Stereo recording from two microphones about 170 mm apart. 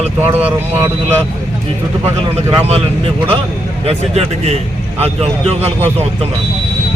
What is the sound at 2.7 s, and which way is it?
Speech, 35° right (ahead or behind).